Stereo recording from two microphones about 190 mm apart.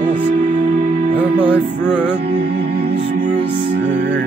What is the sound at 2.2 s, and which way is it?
Music, 55° right (ahead or behind).